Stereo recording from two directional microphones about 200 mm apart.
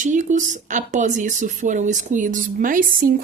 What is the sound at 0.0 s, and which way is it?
Speech, 40° right (ahead or behind).